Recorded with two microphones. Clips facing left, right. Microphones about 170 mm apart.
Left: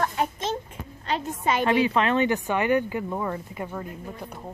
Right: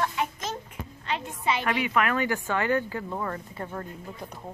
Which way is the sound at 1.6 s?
30° left (ahead or behind).